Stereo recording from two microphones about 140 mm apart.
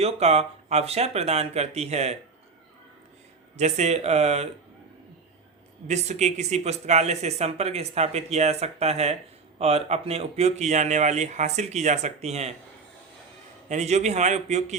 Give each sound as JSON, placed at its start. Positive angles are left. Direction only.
{"t": 0.0, "sound": "speech", "side_deg": -50}
{"t": 3.6, "sound": "speech", "side_deg": -50}
{"t": 5.9, "sound": "speech", "side_deg": -55}
{"t": 13.7, "sound": "a man's voice", "side_deg": -55}